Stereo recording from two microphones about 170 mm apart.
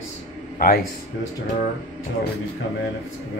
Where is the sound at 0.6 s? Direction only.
55° left (ahead or behind).